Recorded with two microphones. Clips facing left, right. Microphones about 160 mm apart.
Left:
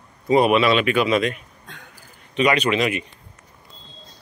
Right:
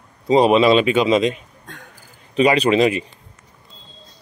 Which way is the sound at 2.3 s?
30° right (ahead or behind).